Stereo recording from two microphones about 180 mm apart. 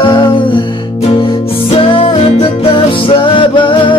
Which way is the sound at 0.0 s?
25° left (ahead or behind).